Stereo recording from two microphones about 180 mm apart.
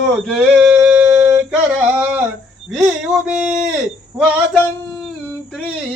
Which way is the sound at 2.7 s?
5° right (ahead or behind).